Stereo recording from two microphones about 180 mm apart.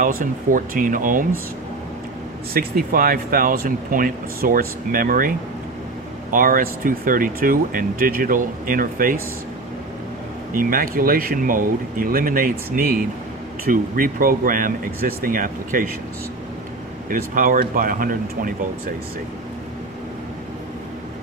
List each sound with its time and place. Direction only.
0.0 s speech: 50° right (ahead or behind)
2.6 s speech: 50° right (ahead or behind)
6.3 s speech: 50° right (ahead or behind)
10.5 s speech: 50° right (ahead or behind)
17.1 s speech: 50° right (ahead or behind)